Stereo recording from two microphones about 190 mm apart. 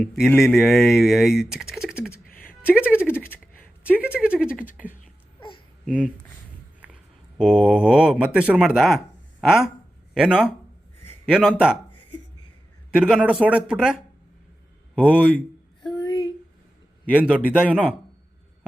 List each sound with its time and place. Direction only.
0.2 s speech: centre (ahead or behind)
5.8 s speech: 5° left (ahead or behind)
6.8 s speech: 5° right (ahead or behind)
12.9 s speech: 5° right (ahead or behind)
15.9 s a sound: 20° left (ahead or behind)
17.1 s speech: 5° right (ahead or behind)